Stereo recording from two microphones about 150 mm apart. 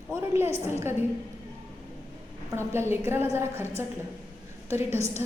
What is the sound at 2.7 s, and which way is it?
A woman's voice, 15° right (ahead or behind).